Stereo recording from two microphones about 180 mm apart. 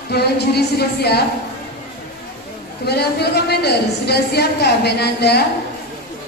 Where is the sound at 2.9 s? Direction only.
65° left (ahead or behind).